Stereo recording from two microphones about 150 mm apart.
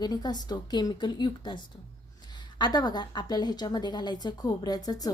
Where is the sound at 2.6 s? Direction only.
25° left (ahead or behind).